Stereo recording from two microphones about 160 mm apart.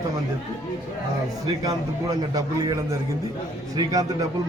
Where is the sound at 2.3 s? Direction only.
25° right (ahead or behind).